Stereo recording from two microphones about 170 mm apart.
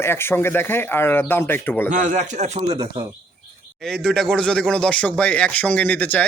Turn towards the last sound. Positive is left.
turn(degrees=10)  # may be behind; listen again after turning